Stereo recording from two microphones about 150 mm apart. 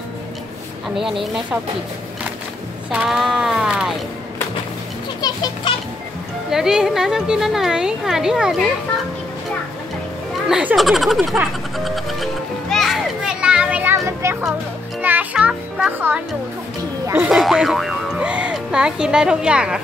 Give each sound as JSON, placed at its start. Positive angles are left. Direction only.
{"t": 0.8, "sound": "speech", "side_deg": 0}
{"t": 2.9, "sound": "a sound", "side_deg": -5}
{"t": 5.2, "sound": "children playing", "side_deg": 35}
{"t": 6.5, "sound": "speech", "side_deg": -5}
{"t": 10.5, "sound": "music", "side_deg": -5}
{"t": 17.1, "sound": "speech", "side_deg": -5}